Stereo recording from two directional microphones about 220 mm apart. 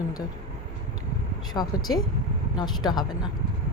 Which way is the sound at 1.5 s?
20° left (ahead or behind).